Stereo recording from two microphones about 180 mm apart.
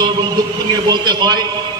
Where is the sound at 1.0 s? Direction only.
25° right (ahead or behind).